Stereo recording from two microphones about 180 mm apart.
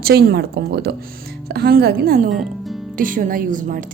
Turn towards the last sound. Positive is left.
turn(degrees=-50)  # may be behind; listen again after turning